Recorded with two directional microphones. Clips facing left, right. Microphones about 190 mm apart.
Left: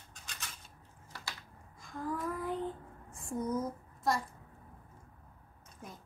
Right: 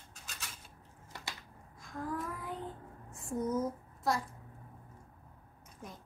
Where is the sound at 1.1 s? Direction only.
20° right (ahead or behind).